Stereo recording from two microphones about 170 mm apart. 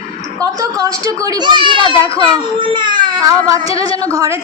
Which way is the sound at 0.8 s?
20° right (ahead or behind).